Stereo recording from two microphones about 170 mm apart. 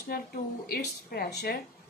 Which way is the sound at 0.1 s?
60° left (ahead or behind).